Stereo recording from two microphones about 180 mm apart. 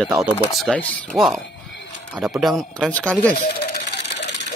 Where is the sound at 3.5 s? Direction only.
70° left (ahead or behind).